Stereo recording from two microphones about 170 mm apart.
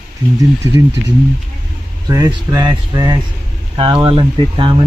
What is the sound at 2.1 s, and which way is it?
Speech, 20° right (ahead or behind).